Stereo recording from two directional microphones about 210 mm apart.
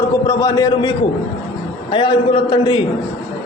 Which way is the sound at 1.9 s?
25° left (ahead or behind).